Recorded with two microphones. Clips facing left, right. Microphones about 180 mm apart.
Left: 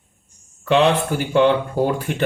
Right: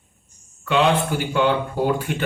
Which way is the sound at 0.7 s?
35° left (ahead or behind).